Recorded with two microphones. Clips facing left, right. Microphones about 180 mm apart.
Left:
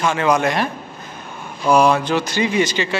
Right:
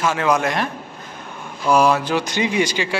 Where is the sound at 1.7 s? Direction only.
5° right (ahead or behind).